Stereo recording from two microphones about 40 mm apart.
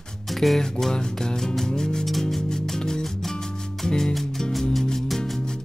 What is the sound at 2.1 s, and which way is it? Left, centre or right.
Music, centre.